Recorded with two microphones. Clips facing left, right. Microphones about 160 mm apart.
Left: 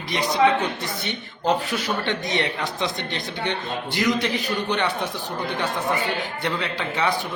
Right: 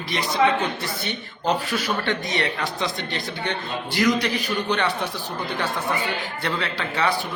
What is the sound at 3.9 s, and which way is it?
Speech, 20° left (ahead or behind).